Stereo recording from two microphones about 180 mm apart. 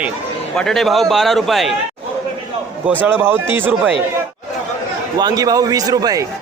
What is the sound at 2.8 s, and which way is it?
A man's voice, 10° right (ahead or behind).